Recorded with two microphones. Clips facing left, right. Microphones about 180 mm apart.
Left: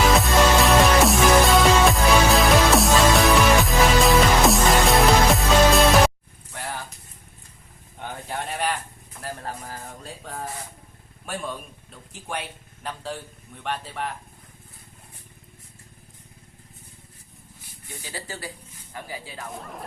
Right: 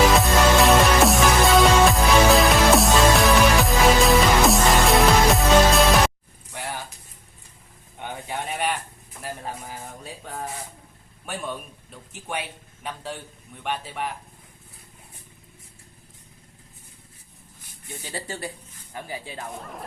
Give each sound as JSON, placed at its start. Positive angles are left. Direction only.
{"t": 0.2, "sound": "music", "side_deg": 0}
{"t": 6.5, "sound": "a sound", "side_deg": 0}
{"t": 8.0, "sound": "a sound", "side_deg": 0}
{"t": 13.6, "sound": "speech", "side_deg": -5}
{"t": 18.1, "sound": "speech", "side_deg": -25}
{"t": 19.5, "sound": "speech", "side_deg": 0}